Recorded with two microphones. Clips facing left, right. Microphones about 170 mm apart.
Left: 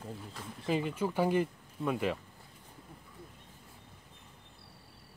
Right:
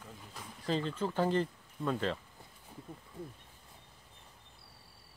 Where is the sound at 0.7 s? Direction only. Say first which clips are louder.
Left 2 dB; 10° left (ahead or behind).